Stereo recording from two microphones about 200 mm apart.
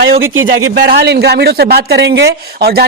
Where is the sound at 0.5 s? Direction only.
75° right (ahead or behind).